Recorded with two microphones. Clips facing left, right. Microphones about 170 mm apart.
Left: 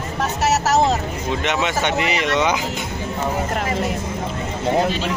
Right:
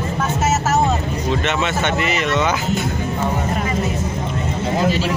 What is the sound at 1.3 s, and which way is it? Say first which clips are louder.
Speech: right 1 dB; 15° left (ahead or behind).